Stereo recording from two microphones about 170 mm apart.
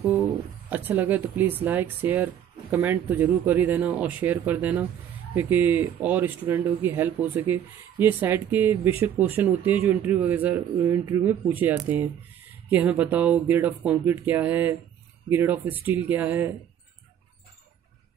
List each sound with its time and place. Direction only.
0.7 s speech: 10° right (ahead or behind)